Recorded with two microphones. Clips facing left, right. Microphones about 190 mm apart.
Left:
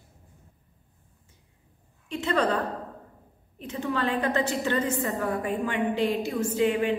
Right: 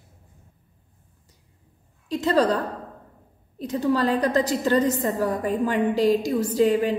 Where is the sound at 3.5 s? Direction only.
40° right (ahead or behind).